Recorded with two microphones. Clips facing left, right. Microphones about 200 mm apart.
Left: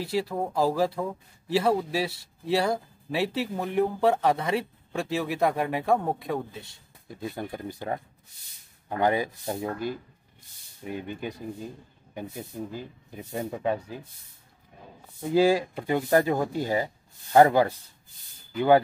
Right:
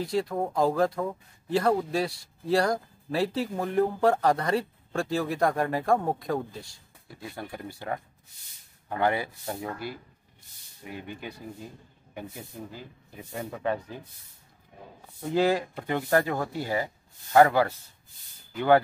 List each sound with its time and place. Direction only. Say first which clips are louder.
0.0 s speech: even; 5° left (ahead or behind)
7.2 s speech: left 4 dB; 20° left (ahead or behind)
13.2 s speech: left 3 dB; 20° left (ahead or behind)
15.3 s speech: left 3 dB; 10° left (ahead or behind)